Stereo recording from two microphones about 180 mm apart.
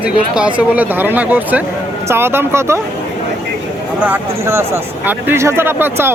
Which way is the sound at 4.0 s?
10° right (ahead or behind).